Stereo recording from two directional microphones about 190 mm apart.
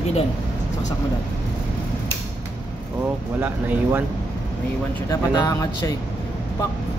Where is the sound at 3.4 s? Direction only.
10° right (ahead or behind).